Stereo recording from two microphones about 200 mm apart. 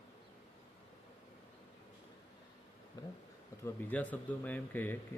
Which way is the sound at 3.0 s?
20° left (ahead or behind).